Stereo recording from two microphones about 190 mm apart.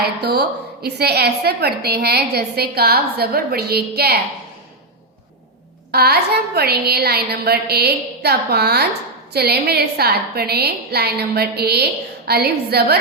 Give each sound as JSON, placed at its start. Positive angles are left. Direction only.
{"t": 0.2, "sound": "a woman's voice", "side_deg": -55}
{"t": 5.9, "sound": "a woman's voice", "side_deg": -55}